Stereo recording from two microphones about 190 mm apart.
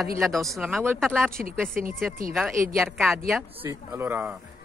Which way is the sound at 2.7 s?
Centre (ahead or behind).